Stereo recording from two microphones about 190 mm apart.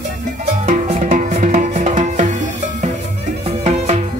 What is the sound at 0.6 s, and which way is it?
Music, 40° right (ahead or behind).